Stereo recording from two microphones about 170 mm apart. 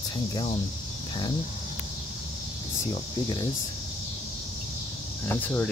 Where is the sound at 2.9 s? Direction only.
25° left (ahead or behind).